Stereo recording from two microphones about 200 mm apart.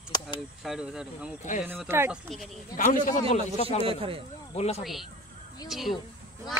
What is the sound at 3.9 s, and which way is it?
Speech, 25° right (ahead or behind).